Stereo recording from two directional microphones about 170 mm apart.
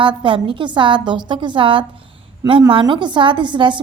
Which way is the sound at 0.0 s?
30° right (ahead or behind).